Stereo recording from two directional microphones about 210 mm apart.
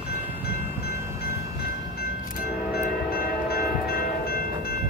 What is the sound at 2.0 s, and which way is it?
Train, 45° left (ahead or behind).